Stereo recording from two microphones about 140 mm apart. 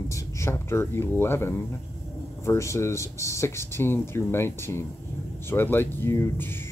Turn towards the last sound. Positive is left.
turn(degrees=15)  # may be behind; listen again after turning